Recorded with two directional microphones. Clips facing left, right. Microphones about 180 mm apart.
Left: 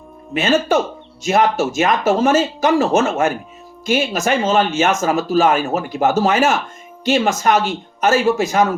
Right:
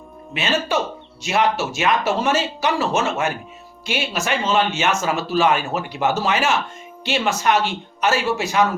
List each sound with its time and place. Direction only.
0.3 s speech: 45° left (ahead or behind)